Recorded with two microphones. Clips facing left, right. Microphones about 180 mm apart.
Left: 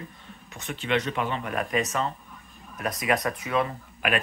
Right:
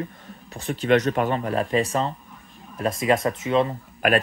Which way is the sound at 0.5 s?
40° right (ahead or behind).